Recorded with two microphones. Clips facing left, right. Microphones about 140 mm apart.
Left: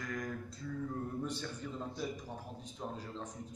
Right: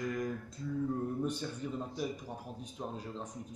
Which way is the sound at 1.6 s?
15° right (ahead or behind).